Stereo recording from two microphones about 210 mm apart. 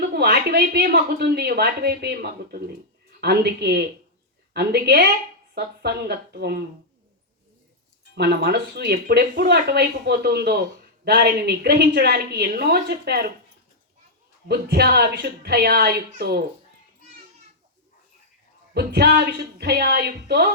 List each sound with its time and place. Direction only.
0.1 s speech: 50° right (ahead or behind)
8.1 s speech: 50° right (ahead or behind)
14.4 s speech: 50° right (ahead or behind)
18.7 s speech: 50° right (ahead or behind)